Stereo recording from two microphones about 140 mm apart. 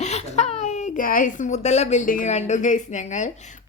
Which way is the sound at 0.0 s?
55° left (ahead or behind).